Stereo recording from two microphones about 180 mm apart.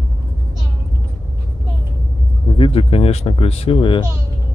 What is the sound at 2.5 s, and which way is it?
Speech, 30° left (ahead or behind).